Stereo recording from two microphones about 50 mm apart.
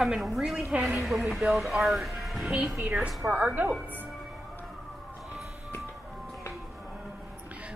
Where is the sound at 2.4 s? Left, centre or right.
Centre.